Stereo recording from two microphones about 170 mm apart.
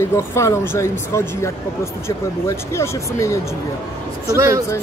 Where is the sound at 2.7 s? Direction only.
15° left (ahead or behind).